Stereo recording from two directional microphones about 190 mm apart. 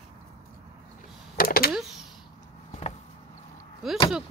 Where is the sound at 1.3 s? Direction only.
50° left (ahead or behind).